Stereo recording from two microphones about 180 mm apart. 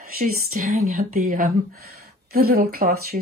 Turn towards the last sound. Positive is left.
turn(degrees=-60)  # may be behind; listen again after turning